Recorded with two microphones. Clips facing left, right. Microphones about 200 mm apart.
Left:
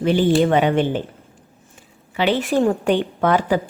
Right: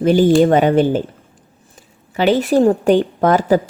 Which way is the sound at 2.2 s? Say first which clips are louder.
Right 5 dB; 40° right (ahead or behind).